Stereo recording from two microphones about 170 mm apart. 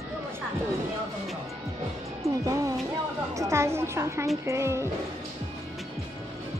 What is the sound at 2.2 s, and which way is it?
Music, 20° right (ahead or behind).